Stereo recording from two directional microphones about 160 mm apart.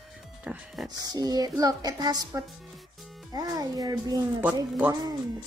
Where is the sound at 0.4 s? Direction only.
5° right (ahead or behind).